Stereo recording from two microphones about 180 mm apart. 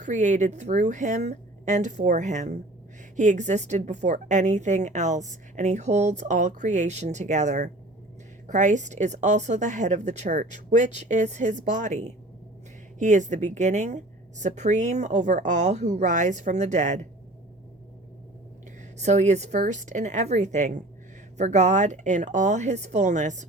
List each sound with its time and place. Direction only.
0.0 s a woman's voice: 45° right (ahead or behind)
18.9 s a woman's voice: 40° right (ahead or behind)